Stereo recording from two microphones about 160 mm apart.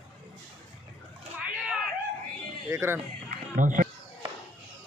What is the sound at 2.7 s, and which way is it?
Music, 15° right (ahead or behind).